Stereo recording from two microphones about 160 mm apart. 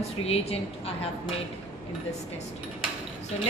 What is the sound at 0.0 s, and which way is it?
Speech, 40° left (ahead or behind).